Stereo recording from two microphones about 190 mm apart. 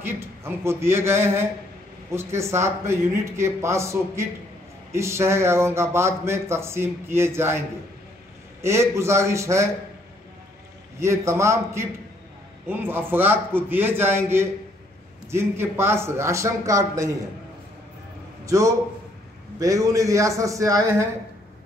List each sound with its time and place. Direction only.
0.0 s speech: 15° right (ahead or behind)
8.6 s speech: 15° right (ahead or behind)
11.0 s speech: 15° right (ahead or behind)
18.4 s a man's voice: 15° right (ahead or behind)